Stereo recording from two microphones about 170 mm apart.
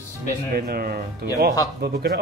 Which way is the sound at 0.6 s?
65° right (ahead or behind).